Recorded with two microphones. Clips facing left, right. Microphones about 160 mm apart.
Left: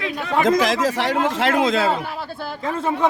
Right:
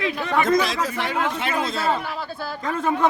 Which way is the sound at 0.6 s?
90° left.